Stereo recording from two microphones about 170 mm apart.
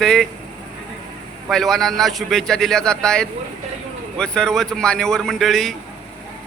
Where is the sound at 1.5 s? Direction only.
5° left (ahead or behind).